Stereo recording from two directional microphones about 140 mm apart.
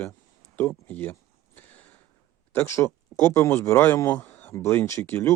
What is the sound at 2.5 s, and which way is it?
Speech, 15° left (ahead or behind).